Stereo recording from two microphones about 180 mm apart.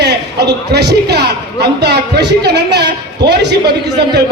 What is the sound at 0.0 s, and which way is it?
A man's voice, 65° right (ahead or behind).